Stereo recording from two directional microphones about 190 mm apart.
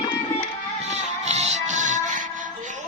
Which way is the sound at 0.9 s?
35° right (ahead or behind).